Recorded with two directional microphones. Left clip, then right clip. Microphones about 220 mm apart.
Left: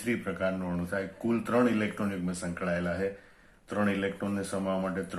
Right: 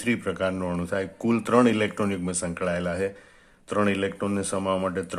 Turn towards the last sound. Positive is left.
turn(degrees=-45)  # may be behind; listen again after turning